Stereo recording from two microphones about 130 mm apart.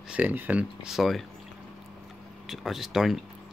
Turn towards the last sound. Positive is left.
turn(degrees=0)  # may be behind; listen again after turning